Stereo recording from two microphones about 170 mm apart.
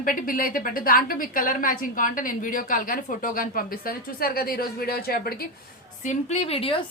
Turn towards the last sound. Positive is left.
turn(degrees=35)  # may be behind; listen again after turning